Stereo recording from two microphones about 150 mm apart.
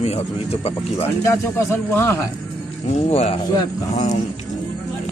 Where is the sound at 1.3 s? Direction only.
15° left (ahead or behind).